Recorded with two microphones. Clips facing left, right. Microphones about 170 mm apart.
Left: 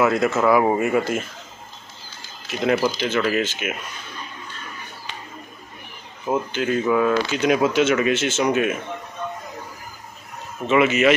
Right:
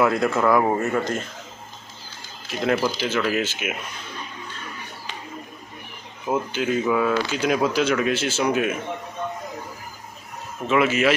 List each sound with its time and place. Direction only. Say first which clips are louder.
0.0 s speech: left 1 dB; centre (ahead or behind)
2.4 s speech: left 2 dB; centre (ahead or behind)
6.2 s speech: left 1 dB; centre (ahead or behind)
10.7 s speech: left 3 dB; centre (ahead or behind)